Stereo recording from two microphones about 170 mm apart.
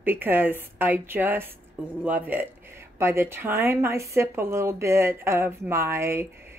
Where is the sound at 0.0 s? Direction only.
10° right (ahead or behind).